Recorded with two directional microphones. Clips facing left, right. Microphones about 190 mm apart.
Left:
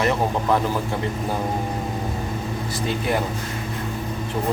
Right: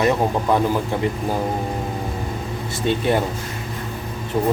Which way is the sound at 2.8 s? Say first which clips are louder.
Right 5 dB; 30° right (ahead or behind).